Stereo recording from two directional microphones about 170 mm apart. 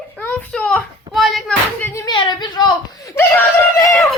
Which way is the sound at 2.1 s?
25° left (ahead or behind).